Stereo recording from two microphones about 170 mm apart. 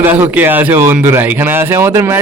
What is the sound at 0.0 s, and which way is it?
Speech, 10° right (ahead or behind).